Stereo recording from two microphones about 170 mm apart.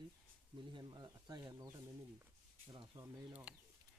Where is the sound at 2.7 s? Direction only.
20° right (ahead or behind).